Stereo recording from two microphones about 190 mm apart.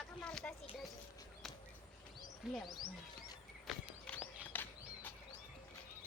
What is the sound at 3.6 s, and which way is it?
Walk, 5° left (ahead or behind).